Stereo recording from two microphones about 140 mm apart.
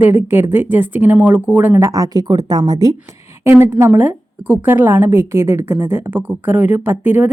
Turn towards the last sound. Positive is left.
turn(degrees=-15)  # may be behind; listen again after turning